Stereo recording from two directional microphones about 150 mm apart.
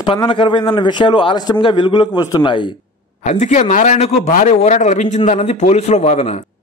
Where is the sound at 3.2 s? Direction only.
50° left (ahead or behind).